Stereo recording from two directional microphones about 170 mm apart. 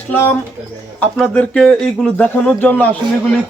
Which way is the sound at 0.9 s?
5° left (ahead or behind).